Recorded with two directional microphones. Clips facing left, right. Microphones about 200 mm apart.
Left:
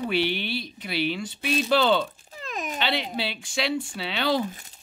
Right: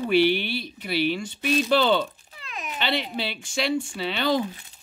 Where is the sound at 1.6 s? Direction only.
5° right (ahead or behind).